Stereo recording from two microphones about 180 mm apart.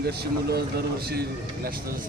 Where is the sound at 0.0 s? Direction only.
60° right (ahead or behind).